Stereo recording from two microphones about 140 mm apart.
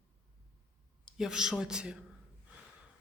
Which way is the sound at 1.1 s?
5° right (ahead or behind).